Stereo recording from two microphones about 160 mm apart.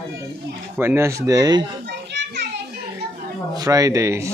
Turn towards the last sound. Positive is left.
turn(degrees=-20)  # may be behind; listen again after turning